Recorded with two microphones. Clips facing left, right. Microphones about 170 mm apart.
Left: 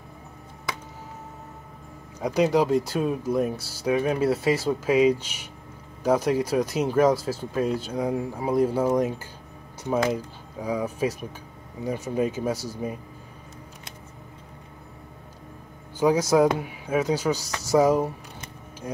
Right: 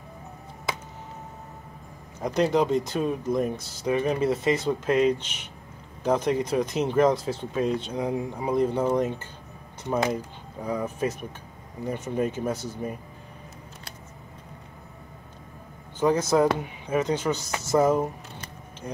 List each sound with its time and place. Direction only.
2.1 s speech: 10° left (ahead or behind)
16.0 s speech: 10° left (ahead or behind)